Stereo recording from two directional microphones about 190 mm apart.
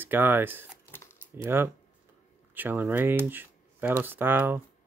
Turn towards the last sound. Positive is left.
turn(degrees=-10)  # may be behind; listen again after turning